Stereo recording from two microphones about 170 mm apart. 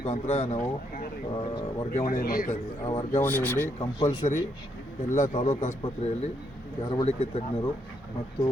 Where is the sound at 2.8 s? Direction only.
30° left (ahead or behind).